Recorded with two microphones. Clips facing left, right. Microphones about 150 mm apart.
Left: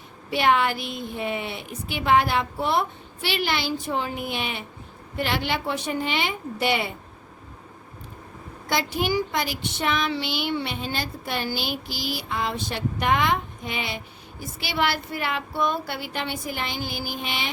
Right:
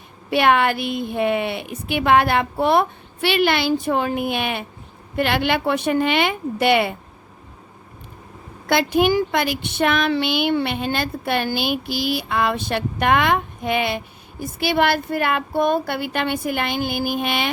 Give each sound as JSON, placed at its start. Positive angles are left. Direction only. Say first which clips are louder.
{"t": 0.3, "sound": "speech", "louder": "right 4 dB", "side_deg": -60}
{"t": 8.7, "sound": "speech", "louder": "right 7 dB", "side_deg": -60}